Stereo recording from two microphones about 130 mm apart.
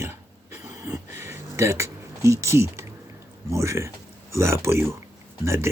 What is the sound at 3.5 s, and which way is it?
Speech, 20° right (ahead or behind).